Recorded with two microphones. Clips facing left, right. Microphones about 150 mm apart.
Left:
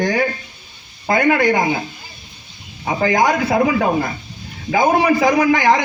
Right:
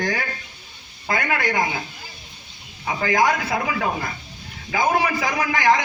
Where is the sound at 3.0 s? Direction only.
20° left (ahead or behind).